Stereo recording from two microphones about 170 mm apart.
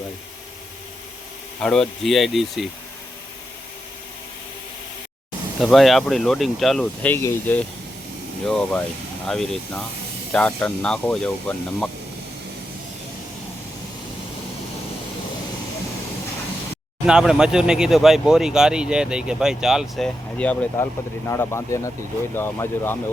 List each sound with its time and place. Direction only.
1.6 s speech: 5° left (ahead or behind)
5.5 s speech: centre (ahead or behind)
17.1 s speech: 5° right (ahead or behind)
20.4 s speech: 5° left (ahead or behind)